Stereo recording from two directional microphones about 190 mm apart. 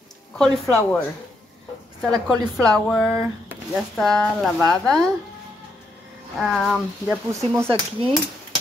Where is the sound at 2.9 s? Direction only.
Centre (ahead or behind).